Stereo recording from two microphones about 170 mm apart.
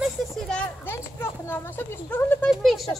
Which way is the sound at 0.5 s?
10° left (ahead or behind).